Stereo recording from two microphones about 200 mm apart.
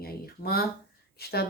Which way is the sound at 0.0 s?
50° left (ahead or behind).